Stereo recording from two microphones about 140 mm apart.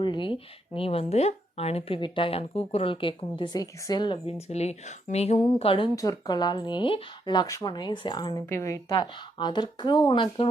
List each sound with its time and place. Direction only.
0.0 s speech: 35° left (ahead or behind)
4.4 s speech: 50° left (ahead or behind)
6.0 s speech: 25° left (ahead or behind)
8.4 s a woman's voice: 20° left (ahead or behind)
8.9 s speech: 30° left (ahead or behind)